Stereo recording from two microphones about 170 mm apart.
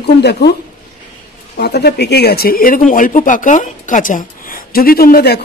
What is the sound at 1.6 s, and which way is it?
Speech, 70° left (ahead or behind).